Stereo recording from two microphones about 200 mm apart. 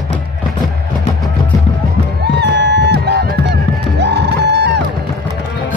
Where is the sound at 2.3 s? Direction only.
60° right (ahead or behind).